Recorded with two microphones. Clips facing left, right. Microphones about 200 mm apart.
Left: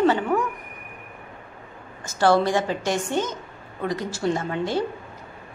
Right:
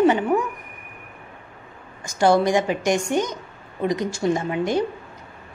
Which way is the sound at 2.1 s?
15° right (ahead or behind).